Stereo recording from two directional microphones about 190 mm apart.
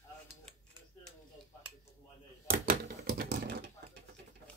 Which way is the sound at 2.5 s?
50° right (ahead or behind).